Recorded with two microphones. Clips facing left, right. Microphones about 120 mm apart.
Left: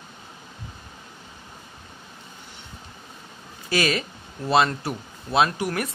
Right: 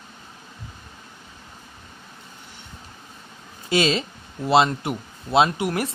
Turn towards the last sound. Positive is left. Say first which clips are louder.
# right 2 dB
turn(degrees=-25)  # may be behind; listen again after turning